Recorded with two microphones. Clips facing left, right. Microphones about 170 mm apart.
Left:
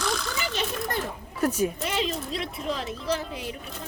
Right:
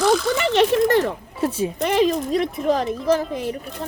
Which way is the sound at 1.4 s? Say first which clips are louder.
Right 1 dB; 30° right (ahead or behind).